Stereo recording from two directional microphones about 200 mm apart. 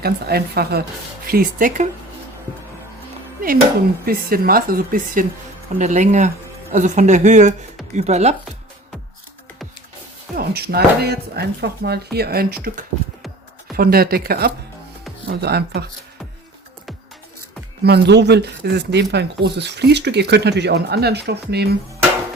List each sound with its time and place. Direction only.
0.0 s speech: 50° right (ahead or behind)
4.0 s speech: 45° right (ahead or behind)
10.3 s speech: 50° right (ahead or behind)
17.8 s speech: 55° right (ahead or behind)